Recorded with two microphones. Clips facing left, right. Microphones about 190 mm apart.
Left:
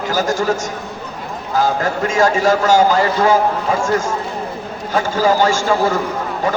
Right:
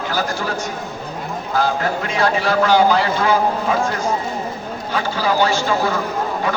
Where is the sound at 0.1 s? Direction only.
45° left (ahead or behind).